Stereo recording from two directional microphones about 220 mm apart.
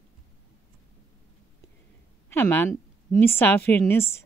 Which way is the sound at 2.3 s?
10° left (ahead or behind).